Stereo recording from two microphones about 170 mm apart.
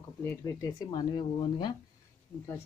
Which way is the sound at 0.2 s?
15° left (ahead or behind).